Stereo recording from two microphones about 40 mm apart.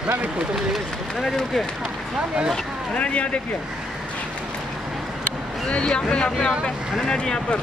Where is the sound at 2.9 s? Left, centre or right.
Left.